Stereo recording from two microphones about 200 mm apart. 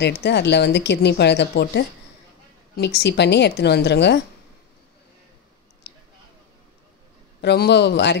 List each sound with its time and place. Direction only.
0.0 s speech: 55° left (ahead or behind)
5.9 s a sound: 55° left (ahead or behind)
7.4 s speech: 55° left (ahead or behind)